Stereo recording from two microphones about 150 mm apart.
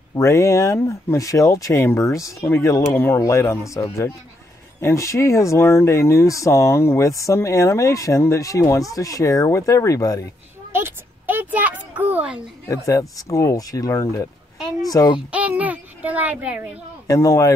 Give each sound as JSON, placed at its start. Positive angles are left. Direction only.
{"t": 0.1, "sound": "speech", "side_deg": 20}
{"t": 10.7, "sound": "a sound", "side_deg": -15}
{"t": 12.6, "sound": "speech", "side_deg": 20}
{"t": 15.1, "sound": "a child's voice", "side_deg": -10}
{"t": 17.1, "sound": "speech", "side_deg": 20}